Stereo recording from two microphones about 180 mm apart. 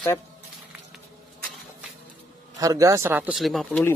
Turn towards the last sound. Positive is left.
turn(degrees=0)  # may be behind; listen again after turning